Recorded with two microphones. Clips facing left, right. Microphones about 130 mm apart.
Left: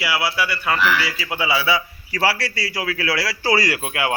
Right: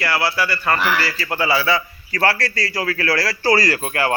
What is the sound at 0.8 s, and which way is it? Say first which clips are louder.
Speech: left 1 dB; 45° right (ahead or behind).